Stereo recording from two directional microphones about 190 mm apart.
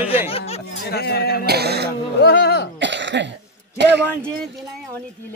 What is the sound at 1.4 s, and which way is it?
Music, 60° right (ahead or behind).